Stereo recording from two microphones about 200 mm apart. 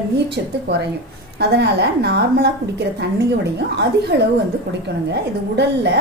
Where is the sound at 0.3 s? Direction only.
55° right (ahead or behind).